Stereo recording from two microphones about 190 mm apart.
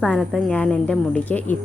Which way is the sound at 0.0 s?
5° left (ahead or behind).